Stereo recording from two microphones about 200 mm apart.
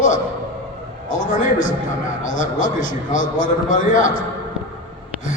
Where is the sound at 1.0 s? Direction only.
40° left (ahead or behind).